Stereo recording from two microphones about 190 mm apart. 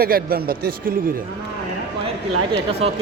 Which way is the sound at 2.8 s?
30° right (ahead or behind).